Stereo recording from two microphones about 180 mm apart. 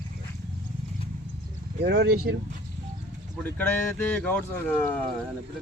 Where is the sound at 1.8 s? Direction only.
70° right (ahead or behind).